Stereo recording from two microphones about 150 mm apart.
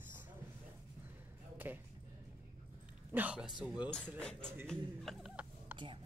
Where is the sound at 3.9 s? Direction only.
5° left (ahead or behind).